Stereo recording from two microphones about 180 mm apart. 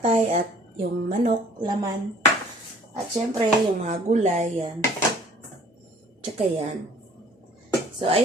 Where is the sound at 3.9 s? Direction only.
40° right (ahead or behind).